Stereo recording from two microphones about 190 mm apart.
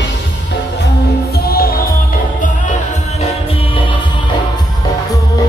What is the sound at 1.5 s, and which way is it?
Music, 55° left (ahead or behind).